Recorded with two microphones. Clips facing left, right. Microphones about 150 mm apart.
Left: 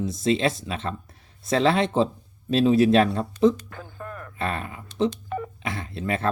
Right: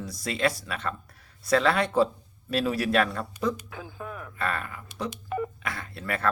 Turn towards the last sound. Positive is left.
turn(degrees=25)  # may be behind; listen again after turning